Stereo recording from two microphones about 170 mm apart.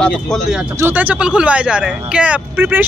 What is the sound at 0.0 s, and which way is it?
Speech, centre (ahead or behind).